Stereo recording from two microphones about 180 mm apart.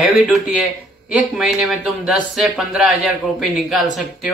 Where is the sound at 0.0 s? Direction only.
Centre (ahead or behind).